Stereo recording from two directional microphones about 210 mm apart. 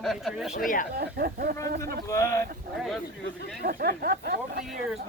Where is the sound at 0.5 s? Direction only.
40° left (ahead or behind).